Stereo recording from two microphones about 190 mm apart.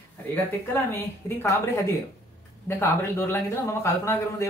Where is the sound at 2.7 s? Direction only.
15° left (ahead or behind).